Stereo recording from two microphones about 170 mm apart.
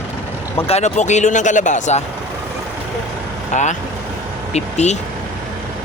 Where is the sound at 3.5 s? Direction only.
45° left (ahead or behind).